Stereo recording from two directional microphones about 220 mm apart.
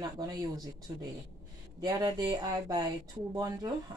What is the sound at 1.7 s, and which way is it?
Speech, 15° right (ahead or behind).